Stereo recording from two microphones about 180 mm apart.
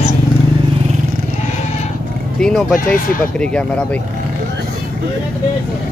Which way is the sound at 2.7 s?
50° left (ahead or behind).